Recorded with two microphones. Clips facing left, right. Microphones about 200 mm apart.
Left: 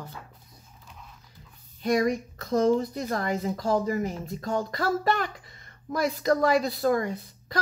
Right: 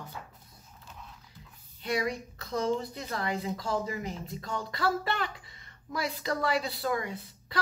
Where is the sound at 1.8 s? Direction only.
45° left (ahead or behind).